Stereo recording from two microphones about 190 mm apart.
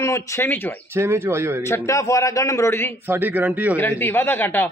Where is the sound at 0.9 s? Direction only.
15° right (ahead or behind).